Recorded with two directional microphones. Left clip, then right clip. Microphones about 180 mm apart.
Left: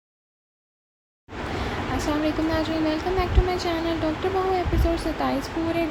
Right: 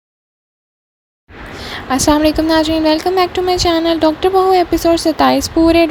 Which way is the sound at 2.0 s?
55° right (ahead or behind).